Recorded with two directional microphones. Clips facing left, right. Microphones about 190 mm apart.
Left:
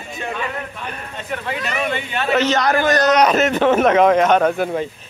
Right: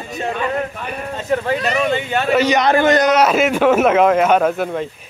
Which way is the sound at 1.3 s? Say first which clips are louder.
Right 7 dB; 40° right (ahead or behind).